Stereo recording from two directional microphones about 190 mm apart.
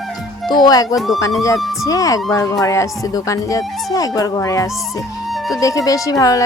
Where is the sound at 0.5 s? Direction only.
20° left (ahead or behind).